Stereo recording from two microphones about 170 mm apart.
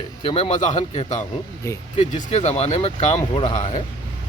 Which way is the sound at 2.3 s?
40° left (ahead or behind).